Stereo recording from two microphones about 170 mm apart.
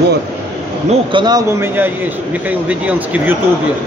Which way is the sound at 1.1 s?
25° right (ahead or behind).